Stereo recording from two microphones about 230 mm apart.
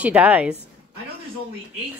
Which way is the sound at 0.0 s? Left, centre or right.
Centre.